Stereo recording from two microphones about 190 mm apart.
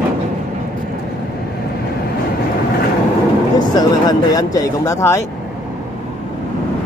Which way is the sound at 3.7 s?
20° left (ahead or behind).